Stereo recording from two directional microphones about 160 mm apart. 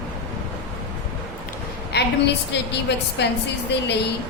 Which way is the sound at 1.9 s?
90° left.